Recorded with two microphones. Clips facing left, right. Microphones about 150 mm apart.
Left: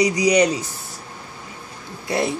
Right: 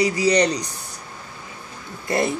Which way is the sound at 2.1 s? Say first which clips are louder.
Even; centre (ahead or behind).